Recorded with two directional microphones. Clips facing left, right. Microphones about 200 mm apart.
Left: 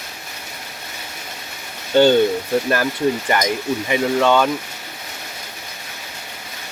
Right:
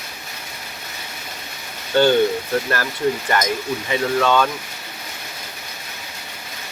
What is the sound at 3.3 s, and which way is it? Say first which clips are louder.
Speech: left 2 dB; 15° left (ahead or behind).